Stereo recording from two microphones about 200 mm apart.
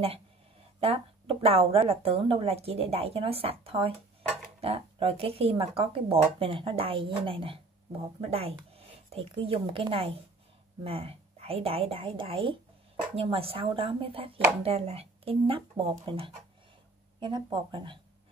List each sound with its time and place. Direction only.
0.7 s speech: 30° right (ahead or behind)